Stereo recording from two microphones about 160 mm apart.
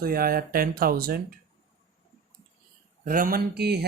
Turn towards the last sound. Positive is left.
turn(degrees=-90)